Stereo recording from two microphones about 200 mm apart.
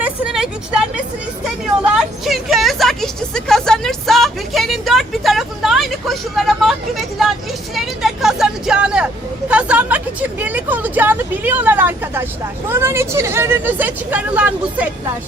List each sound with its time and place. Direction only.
0.0 s vehicle: 5° right (ahead or behind)
1.8 s a woman's voice: centre (ahead or behind)